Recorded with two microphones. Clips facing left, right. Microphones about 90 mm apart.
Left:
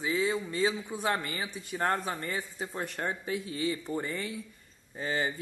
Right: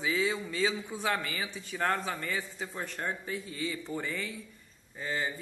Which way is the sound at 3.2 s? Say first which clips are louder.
Left 4 dB; 65° left (ahead or behind).